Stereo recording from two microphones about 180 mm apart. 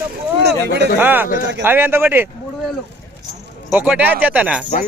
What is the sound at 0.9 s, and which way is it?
Speech, 10° right (ahead or behind).